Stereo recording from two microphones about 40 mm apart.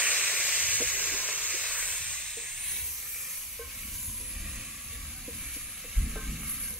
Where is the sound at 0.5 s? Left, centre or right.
Right.